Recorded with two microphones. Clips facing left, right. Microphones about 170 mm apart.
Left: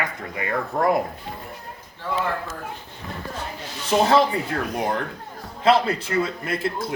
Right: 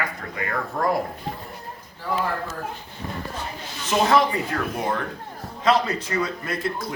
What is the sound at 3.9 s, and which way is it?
Speech, 30° left (ahead or behind).